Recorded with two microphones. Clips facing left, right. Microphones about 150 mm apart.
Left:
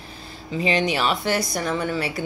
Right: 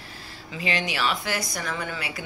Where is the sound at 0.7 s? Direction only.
25° left (ahead or behind).